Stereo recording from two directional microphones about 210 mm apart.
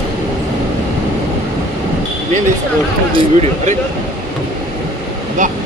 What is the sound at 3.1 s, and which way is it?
Speech, 30° right (ahead or behind).